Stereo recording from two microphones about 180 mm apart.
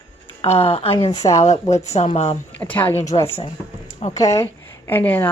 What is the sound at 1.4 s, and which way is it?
Speech, 40° left (ahead or behind).